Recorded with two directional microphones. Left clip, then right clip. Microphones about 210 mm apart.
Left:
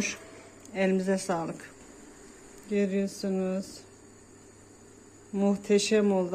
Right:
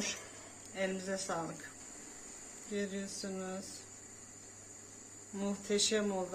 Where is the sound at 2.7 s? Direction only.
35° left (ahead or behind).